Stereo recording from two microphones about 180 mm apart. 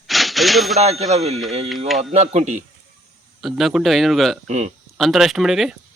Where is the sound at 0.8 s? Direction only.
35° right (ahead or behind).